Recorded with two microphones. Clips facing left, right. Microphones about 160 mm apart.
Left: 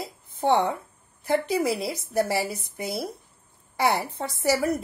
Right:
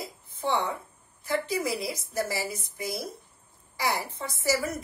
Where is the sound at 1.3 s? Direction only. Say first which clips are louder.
Left 5 dB; 65° left (ahead or behind).